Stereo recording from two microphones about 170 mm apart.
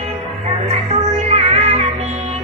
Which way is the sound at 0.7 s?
40° right (ahead or behind).